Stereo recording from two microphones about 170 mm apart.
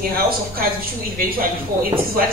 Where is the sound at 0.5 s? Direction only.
60° right (ahead or behind).